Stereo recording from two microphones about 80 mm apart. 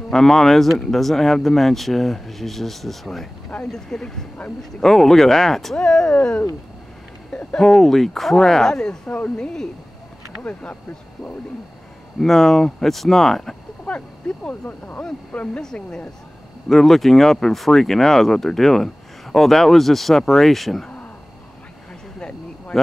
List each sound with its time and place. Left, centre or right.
0.1 s speech: centre
7.2 s speech: centre
12.2 s speech: centre
13.8 s speech: centre